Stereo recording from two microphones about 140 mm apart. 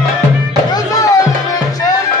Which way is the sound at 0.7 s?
25° left (ahead or behind).